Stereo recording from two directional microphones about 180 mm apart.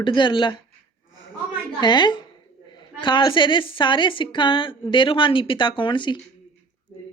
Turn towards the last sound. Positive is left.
turn(degrees=25)  # may be behind; listen again after turning